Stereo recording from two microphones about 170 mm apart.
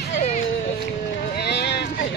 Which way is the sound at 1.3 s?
75° left (ahead or behind).